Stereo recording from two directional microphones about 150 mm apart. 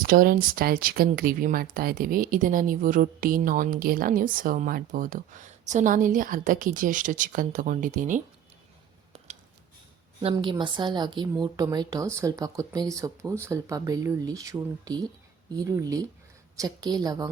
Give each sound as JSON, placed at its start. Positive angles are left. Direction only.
{"t": 0.0, "sound": "speech", "side_deg": -70}
{"t": 9.1, "sound": "a sound", "side_deg": -50}
{"t": 10.3, "sound": "a woman's voice", "side_deg": -30}